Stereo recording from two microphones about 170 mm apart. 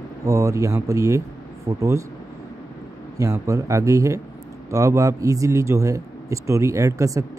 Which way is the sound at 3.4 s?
20° right (ahead or behind).